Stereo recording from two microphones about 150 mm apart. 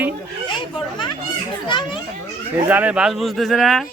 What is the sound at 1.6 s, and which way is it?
Speech, 30° left (ahead or behind).